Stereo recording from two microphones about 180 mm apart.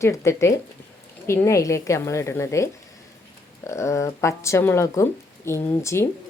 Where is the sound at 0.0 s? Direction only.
15° left (ahead or behind).